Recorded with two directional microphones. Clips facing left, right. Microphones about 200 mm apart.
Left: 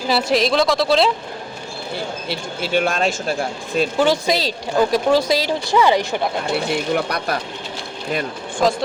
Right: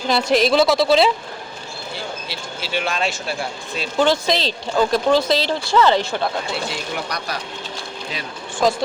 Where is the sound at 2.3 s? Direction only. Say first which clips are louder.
Left 8 dB; 50° left (ahead or behind).